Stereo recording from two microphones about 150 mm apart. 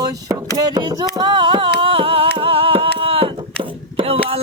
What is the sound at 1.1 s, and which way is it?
Music, 35° right (ahead or behind).